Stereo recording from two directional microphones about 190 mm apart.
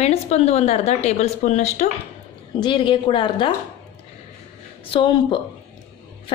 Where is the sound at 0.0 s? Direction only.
35° left (ahead or behind).